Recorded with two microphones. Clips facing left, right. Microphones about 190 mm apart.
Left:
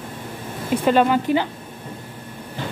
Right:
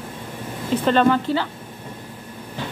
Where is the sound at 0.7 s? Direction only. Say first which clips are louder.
Even; 10° left (ahead or behind).